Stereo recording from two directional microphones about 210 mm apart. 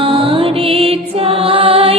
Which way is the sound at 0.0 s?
25° right (ahead or behind).